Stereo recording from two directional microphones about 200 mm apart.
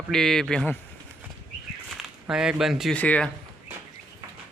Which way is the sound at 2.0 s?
5° right (ahead or behind).